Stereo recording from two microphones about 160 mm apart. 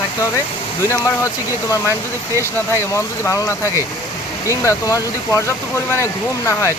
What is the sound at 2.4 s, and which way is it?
Speech, 15° left (ahead or behind).